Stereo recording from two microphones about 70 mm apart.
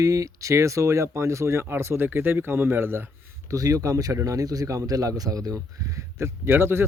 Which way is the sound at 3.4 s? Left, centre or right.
Right.